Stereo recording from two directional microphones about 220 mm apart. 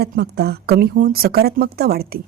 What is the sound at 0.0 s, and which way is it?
A woman's voice, 50° right (ahead or behind).